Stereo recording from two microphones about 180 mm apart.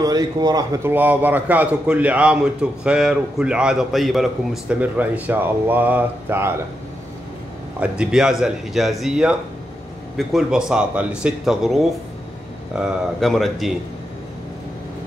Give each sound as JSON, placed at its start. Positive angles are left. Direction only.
{"t": 0.0, "sound": "speech", "side_deg": -20}
{"t": 0.9, "sound": "a man's voice", "side_deg": -10}
{"t": 7.8, "sound": "speech", "side_deg": -5}